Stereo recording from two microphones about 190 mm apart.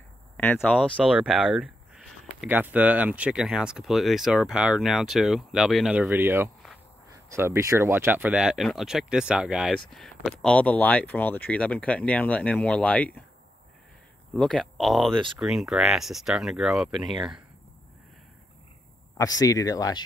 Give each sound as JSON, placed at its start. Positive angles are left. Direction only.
{"t": 0.6, "sound": "speech", "side_deg": 5}
{"t": 14.3, "sound": "speech", "side_deg": 5}
{"t": 19.1, "sound": "speech", "side_deg": 20}